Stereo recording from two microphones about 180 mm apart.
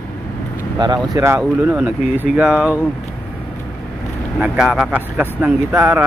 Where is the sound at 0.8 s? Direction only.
20° right (ahead or behind).